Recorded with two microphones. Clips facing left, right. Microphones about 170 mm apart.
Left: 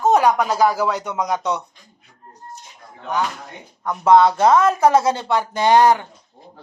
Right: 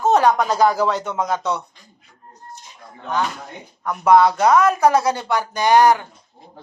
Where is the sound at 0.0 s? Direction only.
15° left (ahead or behind).